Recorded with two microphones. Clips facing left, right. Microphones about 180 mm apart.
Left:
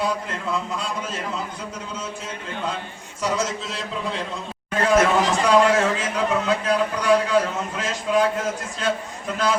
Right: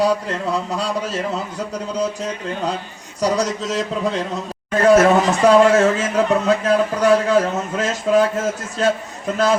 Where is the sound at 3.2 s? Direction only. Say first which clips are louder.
Right 6 dB; 40° right (ahead or behind).